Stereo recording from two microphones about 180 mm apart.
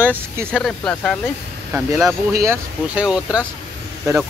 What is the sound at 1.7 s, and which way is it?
Speech, 10° right (ahead or behind).